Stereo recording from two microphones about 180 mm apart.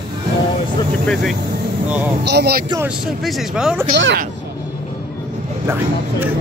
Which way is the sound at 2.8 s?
Centre (ahead or behind).